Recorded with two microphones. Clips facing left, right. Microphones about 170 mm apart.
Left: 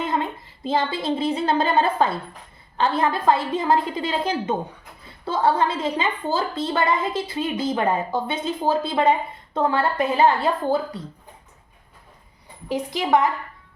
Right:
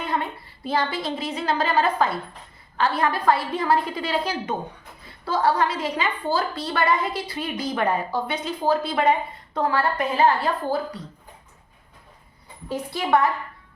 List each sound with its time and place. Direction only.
0.0 s a woman's voice: 20° left (ahead or behind)
12.6 s a woman's voice: 15° left (ahead or behind)